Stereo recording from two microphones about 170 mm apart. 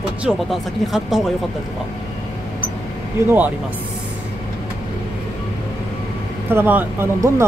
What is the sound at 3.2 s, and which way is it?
Speech, 15° right (ahead or behind).